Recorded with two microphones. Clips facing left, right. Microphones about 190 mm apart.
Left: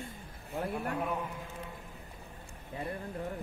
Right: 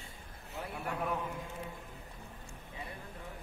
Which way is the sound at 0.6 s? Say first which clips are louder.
Left 7 dB; 50° left (ahead or behind).